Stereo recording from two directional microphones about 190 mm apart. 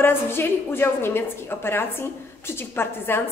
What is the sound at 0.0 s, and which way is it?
A woman's voice, 10° left (ahead or behind).